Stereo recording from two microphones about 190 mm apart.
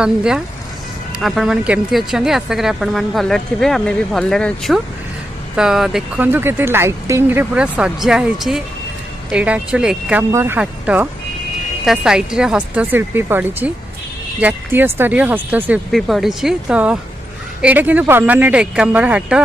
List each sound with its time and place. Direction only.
0.0 s speech: 5° right (ahead or behind)